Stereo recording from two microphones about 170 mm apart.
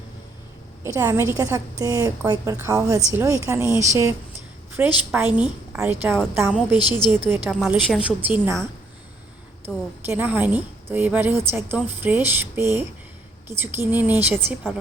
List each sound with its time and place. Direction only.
0.9 s a woman's voice: 15° right (ahead or behind)
9.6 s a woman's voice: 10° right (ahead or behind)